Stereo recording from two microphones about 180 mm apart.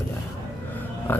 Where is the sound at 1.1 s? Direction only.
10° left (ahead or behind).